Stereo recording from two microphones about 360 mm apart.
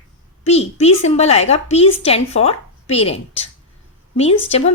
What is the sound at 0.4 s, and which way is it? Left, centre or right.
A woman's voice, centre.